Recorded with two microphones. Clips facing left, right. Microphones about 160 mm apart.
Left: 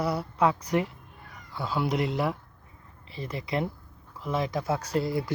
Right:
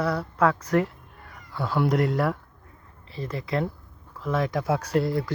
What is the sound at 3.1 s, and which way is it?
Speech, 20° left (ahead or behind).